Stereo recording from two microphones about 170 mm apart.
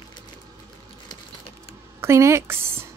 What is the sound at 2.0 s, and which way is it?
Speech, 15° right (ahead or behind).